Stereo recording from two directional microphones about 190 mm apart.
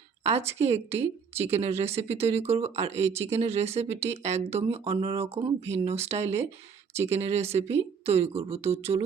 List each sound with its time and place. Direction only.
0.6 s a woman's voice: 35° right (ahead or behind)